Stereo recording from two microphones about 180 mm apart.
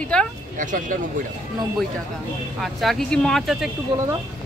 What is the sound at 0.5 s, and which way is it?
Speech, 50° right (ahead or behind).